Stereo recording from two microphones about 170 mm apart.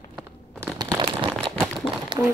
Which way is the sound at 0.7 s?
25° right (ahead or behind).